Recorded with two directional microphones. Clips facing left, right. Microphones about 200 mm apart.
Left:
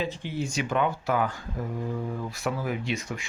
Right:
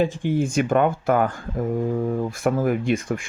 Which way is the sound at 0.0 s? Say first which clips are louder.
Right 9 dB; 50° right (ahead or behind).